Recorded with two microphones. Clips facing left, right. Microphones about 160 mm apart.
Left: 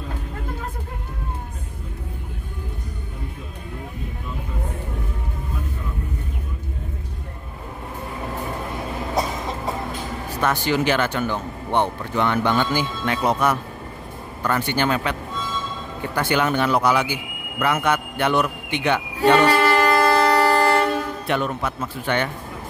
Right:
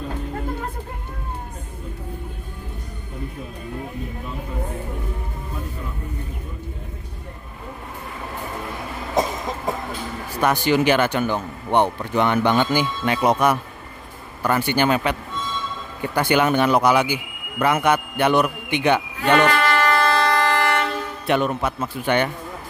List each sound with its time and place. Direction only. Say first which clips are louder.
10.4 s speech: right 3 dB; 15° right (ahead or behind)
16.2 s speech: right 3 dB; 15° right (ahead or behind)
19.1 s train: left 6 dB; 35° left (ahead or behind)
21.3 s speech: right 5 dB; 15° right (ahead or behind)